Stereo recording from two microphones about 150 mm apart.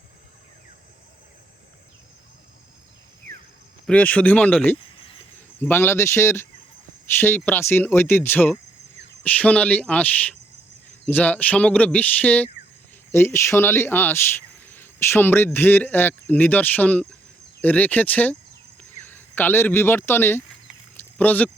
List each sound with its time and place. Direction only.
3.8 s speech: 10° left (ahead or behind)
14.7 s cricket: 15° left (ahead or behind)
15.5 s speech: 15° left (ahead or behind)